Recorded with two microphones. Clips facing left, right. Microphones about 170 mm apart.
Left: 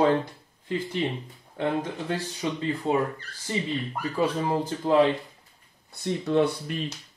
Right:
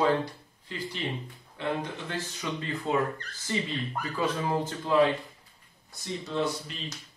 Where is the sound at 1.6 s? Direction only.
40° left (ahead or behind).